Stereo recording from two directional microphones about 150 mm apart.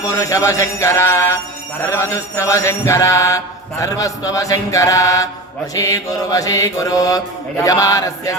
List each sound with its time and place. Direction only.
0.1 s mantra: 20° left (ahead or behind)